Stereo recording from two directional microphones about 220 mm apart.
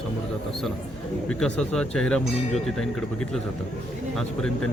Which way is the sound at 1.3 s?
5° left (ahead or behind).